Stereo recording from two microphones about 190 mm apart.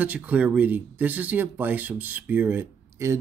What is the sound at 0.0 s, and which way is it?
A man's voice, 10° right (ahead or behind).